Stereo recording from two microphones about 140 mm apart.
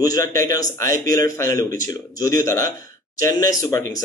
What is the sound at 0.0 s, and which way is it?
A man's voice, 25° left (ahead or behind).